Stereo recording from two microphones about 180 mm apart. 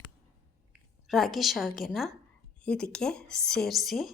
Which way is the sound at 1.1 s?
Centre (ahead or behind).